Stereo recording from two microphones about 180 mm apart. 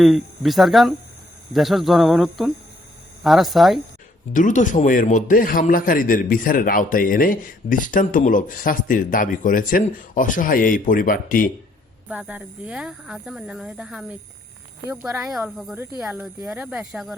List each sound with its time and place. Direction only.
0.0 s speech: centre (ahead or behind)
4.3 s a man's voice: 45° left (ahead or behind)
12.0 s speech: 5° right (ahead or behind)